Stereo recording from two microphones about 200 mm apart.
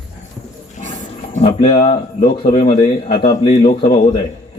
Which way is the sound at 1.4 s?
25° left (ahead or behind).